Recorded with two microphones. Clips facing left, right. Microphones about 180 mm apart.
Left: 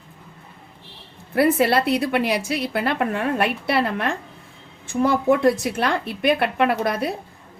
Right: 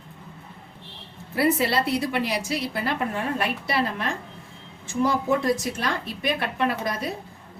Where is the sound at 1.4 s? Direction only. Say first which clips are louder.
Left 4 dB; 55° left (ahead or behind).